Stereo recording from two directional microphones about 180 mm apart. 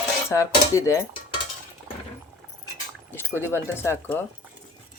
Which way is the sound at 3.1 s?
10° left (ahead or behind).